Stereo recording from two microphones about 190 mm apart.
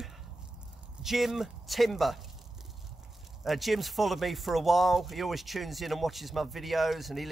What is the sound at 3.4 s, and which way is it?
Speech, centre (ahead or behind).